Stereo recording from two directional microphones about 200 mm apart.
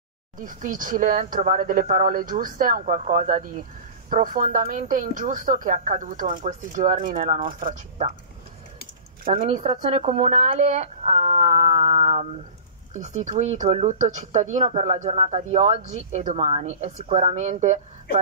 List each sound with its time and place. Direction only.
0.4 s speech: 40° right (ahead or behind)
9.3 s speech: 30° right (ahead or behind)